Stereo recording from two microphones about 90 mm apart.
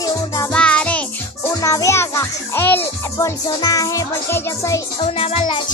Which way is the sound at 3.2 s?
40° left (ahead or behind).